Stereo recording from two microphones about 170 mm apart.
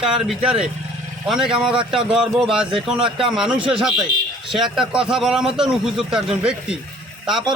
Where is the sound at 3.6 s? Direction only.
30° right (ahead or behind).